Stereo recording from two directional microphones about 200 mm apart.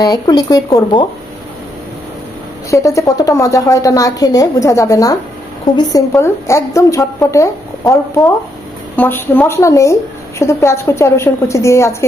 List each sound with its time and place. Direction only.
0.0 s speech: 20° left (ahead or behind)
2.7 s a woman's voice: 15° left (ahead or behind)